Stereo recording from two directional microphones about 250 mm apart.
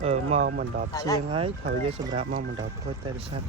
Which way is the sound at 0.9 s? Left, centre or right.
Centre.